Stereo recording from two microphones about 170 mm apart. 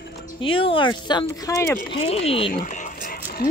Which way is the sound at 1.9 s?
35° left (ahead or behind).